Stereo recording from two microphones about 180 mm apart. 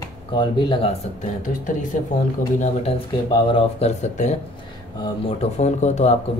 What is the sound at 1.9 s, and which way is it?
Speech, 45° left (ahead or behind).